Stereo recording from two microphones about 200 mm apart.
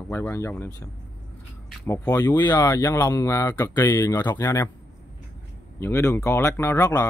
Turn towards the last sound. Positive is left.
turn(degrees=15)  # may be behind; listen again after turning